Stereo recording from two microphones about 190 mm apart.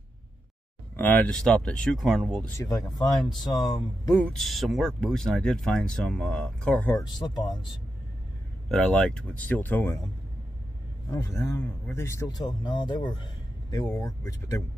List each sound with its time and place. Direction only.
0.9 s speech: 10° left (ahead or behind)
2.5 s speech: 15° left (ahead or behind)
4.3 s speech: centre (ahead or behind); by 7.5 s 20° left (ahead or behind)
8.6 s speech: centre (ahead or behind)
11.1 s speech: 15° left (ahead or behind)